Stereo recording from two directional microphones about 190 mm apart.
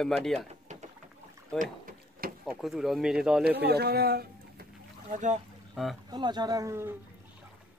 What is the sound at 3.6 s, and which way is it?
Boat, 55° right (ahead or behind).